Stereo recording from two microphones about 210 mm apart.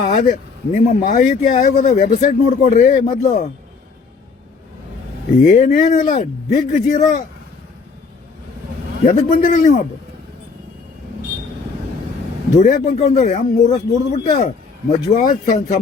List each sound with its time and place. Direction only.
0.0 s speech: 40° left (ahead or behind)
5.4 s speech: 35° left (ahead or behind)
9.0 s speech: 40° left (ahead or behind)
12.5 s speech: 40° left (ahead or behind)